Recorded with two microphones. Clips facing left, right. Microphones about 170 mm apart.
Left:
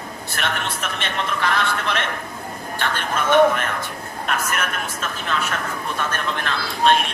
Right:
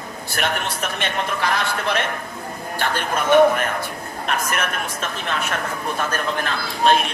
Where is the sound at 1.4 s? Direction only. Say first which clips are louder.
Even; 40° right (ahead or behind).